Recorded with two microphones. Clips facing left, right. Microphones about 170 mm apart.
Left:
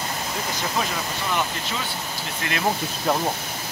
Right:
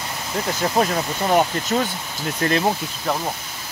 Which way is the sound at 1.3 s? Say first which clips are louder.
Right 10 dB; 45° right (ahead or behind).